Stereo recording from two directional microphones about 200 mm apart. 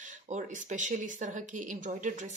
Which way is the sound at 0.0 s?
40° right (ahead or behind).